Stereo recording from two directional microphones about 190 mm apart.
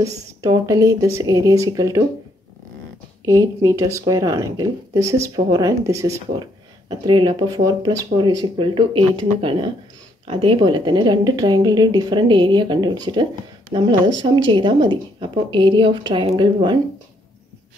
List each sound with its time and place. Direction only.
0.4 s speech: 20° right (ahead or behind)
3.3 s speech: 20° right (ahead or behind)